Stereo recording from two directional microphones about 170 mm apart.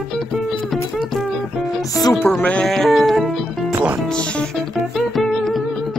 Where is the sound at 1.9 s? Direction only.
20° left (ahead or behind).